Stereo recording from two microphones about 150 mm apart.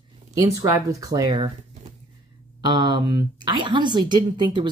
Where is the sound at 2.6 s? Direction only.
30° right (ahead or behind).